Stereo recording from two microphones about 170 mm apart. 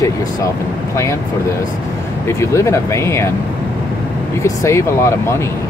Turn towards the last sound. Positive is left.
turn(degrees=15)  # may be behind; listen again after turning